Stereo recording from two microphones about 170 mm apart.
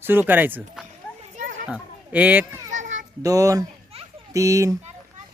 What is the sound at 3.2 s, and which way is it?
Speech, 20° right (ahead or behind).